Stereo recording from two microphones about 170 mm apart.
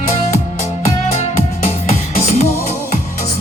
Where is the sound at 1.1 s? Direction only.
40° left (ahead or behind).